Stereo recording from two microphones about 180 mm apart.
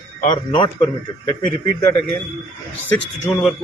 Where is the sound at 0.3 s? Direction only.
25° left (ahead or behind).